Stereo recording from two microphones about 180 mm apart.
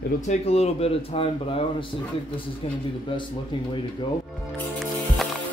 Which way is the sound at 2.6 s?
35° left (ahead or behind).